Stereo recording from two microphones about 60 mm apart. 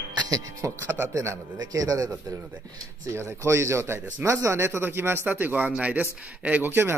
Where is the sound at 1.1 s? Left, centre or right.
Right.